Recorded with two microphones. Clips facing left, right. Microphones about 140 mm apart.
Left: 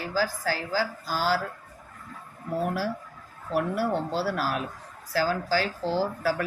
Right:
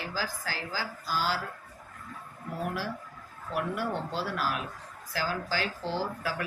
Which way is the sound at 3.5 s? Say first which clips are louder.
Left 5 dB; 40° left (ahead or behind).